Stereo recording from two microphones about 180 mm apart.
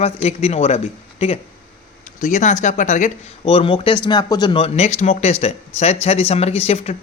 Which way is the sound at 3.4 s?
30° left (ahead or behind).